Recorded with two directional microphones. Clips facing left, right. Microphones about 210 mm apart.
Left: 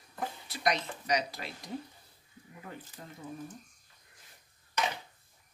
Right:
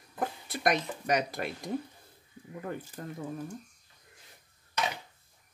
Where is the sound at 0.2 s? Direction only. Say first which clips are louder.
Right 3 dB; 55° right (ahead or behind).